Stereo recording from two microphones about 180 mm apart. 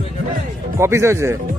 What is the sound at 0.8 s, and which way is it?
Speech, 15° right (ahead or behind).